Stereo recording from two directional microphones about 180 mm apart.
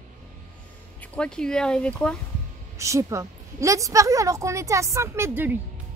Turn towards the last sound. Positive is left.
turn(degrees=-10)  # may be behind; listen again after turning